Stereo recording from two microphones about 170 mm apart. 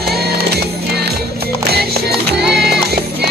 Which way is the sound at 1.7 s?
70° right (ahead or behind).